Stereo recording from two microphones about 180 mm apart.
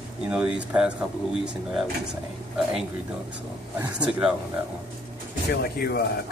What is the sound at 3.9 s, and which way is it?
Speech, 5° right (ahead or behind).